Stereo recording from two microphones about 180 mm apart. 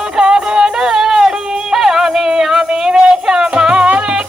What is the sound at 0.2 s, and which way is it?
Music, 5° right (ahead or behind).